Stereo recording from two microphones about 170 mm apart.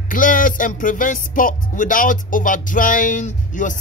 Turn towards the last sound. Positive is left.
turn(degrees=50)  # may be behind; listen again after turning